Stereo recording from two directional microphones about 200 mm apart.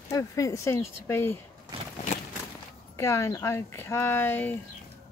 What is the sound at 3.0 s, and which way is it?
Speech, 15° left (ahead or behind).